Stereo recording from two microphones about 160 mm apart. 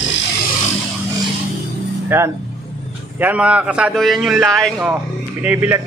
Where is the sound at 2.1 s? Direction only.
15° right (ahead or behind).